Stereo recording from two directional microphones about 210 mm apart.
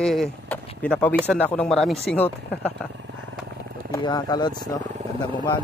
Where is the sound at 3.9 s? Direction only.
15° left (ahead or behind).